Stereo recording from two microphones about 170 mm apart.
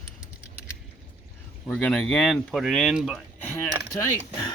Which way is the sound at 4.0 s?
20° left (ahead or behind).